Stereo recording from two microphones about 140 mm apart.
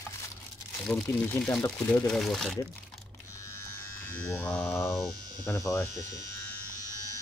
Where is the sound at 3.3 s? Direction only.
20° left (ahead or behind).